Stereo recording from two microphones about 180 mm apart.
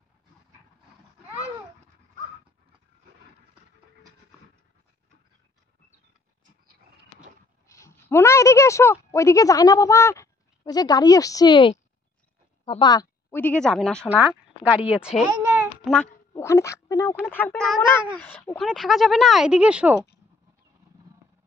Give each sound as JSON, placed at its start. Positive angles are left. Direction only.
{"t": 7.6, "sound": "a woman's voice", "side_deg": 15}
{"t": 13.3, "sound": "speech", "side_deg": 10}
{"t": 14.0, "sound": "a sound", "side_deg": -10}
{"t": 16.4, "sound": "speech", "side_deg": 15}